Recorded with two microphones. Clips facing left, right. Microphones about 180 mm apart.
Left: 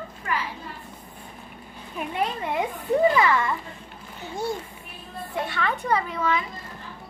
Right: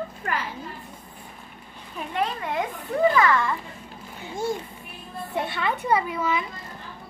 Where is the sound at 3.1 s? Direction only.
15° left (ahead or behind).